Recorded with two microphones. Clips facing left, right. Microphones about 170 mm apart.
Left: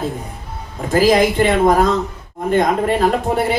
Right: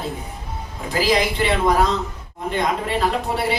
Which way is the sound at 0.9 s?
50° left (ahead or behind).